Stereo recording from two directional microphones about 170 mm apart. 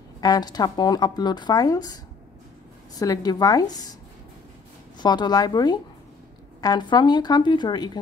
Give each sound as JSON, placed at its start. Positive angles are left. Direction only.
{"t": 0.2, "sound": "speech", "side_deg": 25}
{"t": 4.9, "sound": "speech", "side_deg": 25}